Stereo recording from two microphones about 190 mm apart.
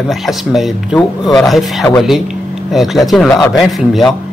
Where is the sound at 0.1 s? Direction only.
Centre (ahead or behind).